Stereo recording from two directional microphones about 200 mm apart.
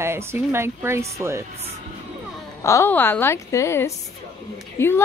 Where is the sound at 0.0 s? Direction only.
10° right (ahead or behind).